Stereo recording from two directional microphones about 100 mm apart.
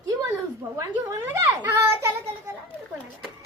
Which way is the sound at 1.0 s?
30° right (ahead or behind).